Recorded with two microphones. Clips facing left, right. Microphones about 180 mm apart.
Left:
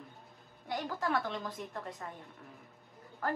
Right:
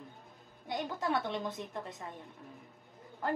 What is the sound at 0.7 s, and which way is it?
A woman's voice, 20° right (ahead or behind).